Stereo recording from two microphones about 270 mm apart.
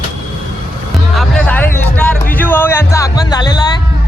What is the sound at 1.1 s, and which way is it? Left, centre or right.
Music, centre.